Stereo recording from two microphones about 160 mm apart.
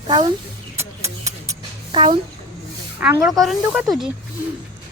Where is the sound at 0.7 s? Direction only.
20° right (ahead or behind).